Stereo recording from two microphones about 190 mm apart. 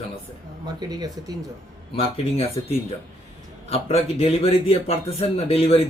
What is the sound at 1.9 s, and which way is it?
Speech, 30° left (ahead or behind).